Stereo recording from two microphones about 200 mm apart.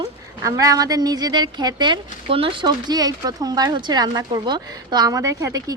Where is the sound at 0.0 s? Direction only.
15° right (ahead or behind).